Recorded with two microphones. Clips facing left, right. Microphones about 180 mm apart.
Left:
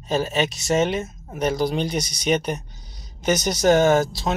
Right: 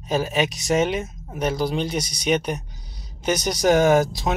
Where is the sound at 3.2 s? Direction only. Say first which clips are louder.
Left 1 dB; 10° right (ahead or behind).